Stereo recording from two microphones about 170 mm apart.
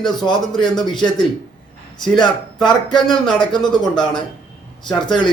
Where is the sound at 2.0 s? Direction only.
5° left (ahead or behind).